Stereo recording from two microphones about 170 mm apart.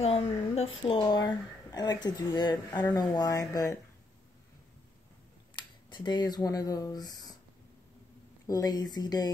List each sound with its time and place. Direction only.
0.0 s a woman's voice: 35° left (ahead or behind)
5.9 s a woman's voice: 25° left (ahead or behind)
8.5 s a woman's voice: 20° left (ahead or behind)